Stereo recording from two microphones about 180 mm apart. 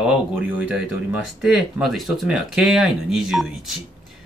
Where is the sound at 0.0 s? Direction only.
10° right (ahead or behind).